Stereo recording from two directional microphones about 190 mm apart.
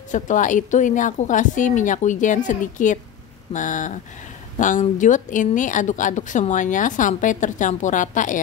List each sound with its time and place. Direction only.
0.1 s a woman's voice: 40° left (ahead or behind)